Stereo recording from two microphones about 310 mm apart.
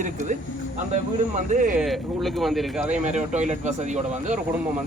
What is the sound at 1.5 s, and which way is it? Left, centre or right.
Speech, right.